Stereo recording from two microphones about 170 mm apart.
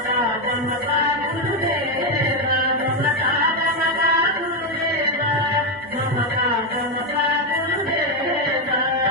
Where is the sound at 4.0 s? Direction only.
65° right (ahead or behind).